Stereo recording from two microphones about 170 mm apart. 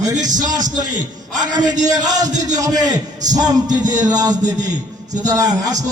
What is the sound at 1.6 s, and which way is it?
Speech, 45° right (ahead or behind).